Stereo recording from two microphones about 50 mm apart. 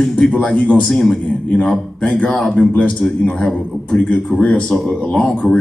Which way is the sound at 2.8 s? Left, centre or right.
Left.